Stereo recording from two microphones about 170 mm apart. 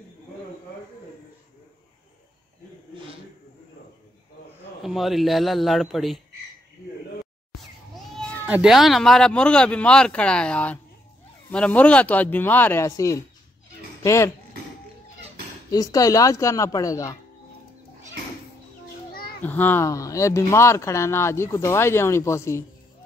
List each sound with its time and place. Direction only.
4.8 s speech: centre (ahead or behind)
8.5 s speech: 5° right (ahead or behind); by 14.3 s 15° left (ahead or behind)
15.7 s speech: 20° left (ahead or behind)
19.4 s speech: 10° left (ahead or behind)